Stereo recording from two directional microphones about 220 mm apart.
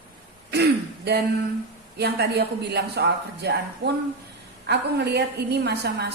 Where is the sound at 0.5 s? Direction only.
50° right (ahead or behind).